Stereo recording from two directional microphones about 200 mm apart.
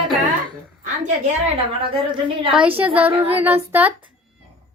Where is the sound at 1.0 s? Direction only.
30° right (ahead or behind).